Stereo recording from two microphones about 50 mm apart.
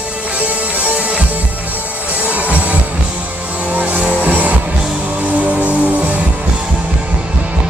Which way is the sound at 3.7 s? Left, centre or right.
Right.